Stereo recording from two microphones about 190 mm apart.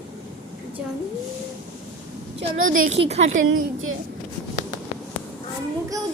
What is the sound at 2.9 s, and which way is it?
Speech, 35° right (ahead or behind).